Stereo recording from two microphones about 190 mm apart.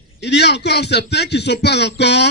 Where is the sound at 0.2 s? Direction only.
60° left (ahead or behind).